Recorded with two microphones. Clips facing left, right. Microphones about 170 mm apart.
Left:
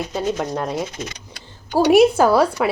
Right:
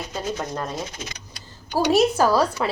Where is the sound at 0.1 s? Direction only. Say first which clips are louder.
Left 4 dB; 15° left (ahead or behind).